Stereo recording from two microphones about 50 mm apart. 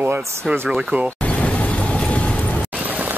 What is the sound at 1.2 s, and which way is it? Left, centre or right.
Vehicle, left.